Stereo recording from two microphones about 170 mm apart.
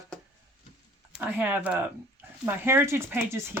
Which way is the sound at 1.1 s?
10° right (ahead or behind).